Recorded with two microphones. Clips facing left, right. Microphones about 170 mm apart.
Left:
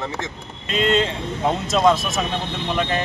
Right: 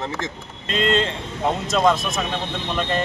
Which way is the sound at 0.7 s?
5° left (ahead or behind).